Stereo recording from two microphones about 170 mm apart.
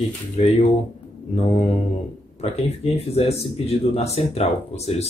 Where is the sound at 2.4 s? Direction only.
35° left (ahead or behind).